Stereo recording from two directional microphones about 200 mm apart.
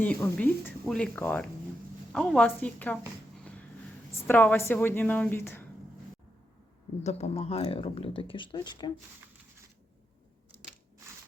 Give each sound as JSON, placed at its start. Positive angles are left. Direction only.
{"t": 0.0, "sound": "a woman's voice", "side_deg": 5}
{"t": 3.4, "sound": "a sound", "side_deg": 5}
{"t": 4.3, "sound": "speech", "side_deg": 10}
{"t": 7.0, "sound": "speech", "side_deg": 35}